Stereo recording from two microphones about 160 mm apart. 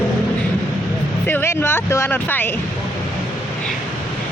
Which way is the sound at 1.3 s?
15° left (ahead or behind).